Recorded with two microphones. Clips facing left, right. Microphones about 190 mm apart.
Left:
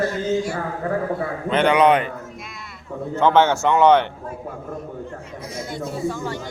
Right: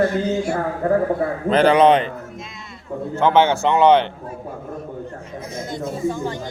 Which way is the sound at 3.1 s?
10° right (ahead or behind).